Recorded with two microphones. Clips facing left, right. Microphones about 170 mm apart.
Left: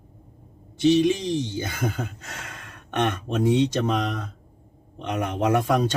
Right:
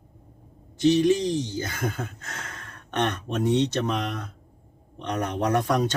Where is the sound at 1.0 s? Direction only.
20° left (ahead or behind).